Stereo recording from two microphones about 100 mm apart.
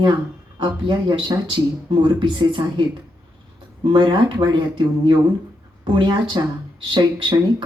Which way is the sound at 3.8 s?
50° right (ahead or behind).